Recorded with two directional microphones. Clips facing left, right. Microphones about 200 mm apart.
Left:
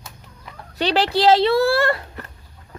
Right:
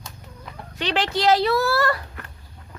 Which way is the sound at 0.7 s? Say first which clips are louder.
Left 5 dB; 35° left (ahead or behind).